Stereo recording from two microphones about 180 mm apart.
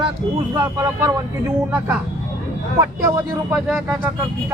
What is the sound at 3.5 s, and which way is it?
Speech, centre (ahead or behind).